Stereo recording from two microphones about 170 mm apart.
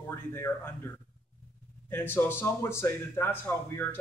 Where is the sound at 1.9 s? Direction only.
10° left (ahead or behind).